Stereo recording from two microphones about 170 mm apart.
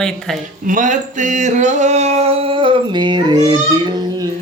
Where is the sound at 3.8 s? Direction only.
25° right (ahead or behind).